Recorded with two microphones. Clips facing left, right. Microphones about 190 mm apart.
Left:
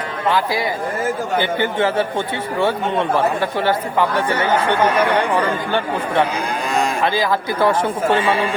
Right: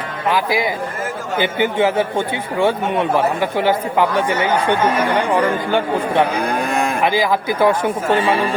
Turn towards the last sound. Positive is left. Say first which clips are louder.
# right 2 dB
turn(degrees=-15)  # may be behind; listen again after turning